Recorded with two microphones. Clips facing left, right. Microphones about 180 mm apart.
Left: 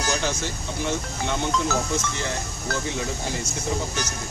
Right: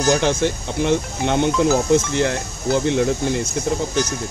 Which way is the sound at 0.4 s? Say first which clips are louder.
Right 9 dB; 60° right (ahead or behind).